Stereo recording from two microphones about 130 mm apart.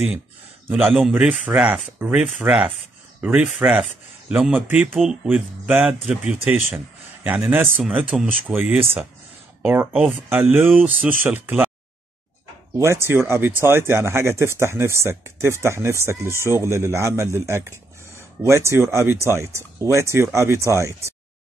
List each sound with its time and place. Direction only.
0.8 s speech: 5° right (ahead or behind)
12.7 s speech: 20° right (ahead or behind)